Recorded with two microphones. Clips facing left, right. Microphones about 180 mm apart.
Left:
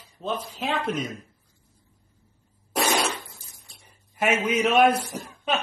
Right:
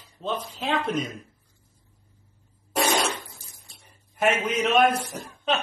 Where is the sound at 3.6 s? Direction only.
Centre (ahead or behind).